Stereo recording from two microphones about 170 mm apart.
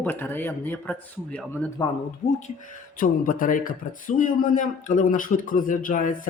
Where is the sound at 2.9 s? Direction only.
55° left (ahead or behind).